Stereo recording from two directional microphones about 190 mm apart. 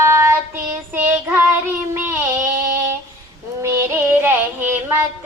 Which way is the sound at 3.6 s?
10° right (ahead or behind).